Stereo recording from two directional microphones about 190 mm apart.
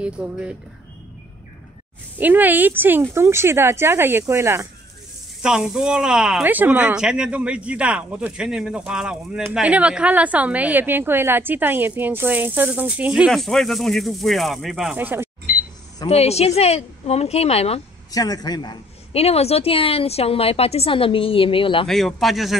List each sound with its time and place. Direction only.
0.0 s speech: 5° right (ahead or behind)
2.1 s a woman's voice: 10° right (ahead or behind)
5.4 s a woman's voice: 5° right (ahead or behind)
16.1 s speech: 35° left (ahead or behind)
18.1 s a woman's voice: 20° left (ahead or behind)
21.8 s speech: centre (ahead or behind)